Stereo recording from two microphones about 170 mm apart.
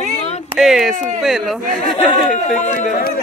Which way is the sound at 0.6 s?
Centre (ahead or behind).